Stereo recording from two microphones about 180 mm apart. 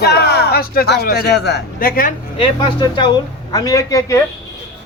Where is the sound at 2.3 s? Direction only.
25° left (ahead or behind).